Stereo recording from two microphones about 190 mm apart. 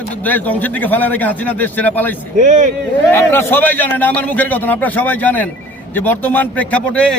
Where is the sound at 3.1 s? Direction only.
10° left (ahead or behind).